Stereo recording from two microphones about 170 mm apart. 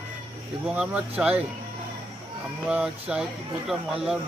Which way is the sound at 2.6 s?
5° right (ahead or behind).